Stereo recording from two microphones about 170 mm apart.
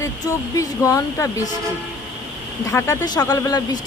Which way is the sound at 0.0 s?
20° left (ahead or behind).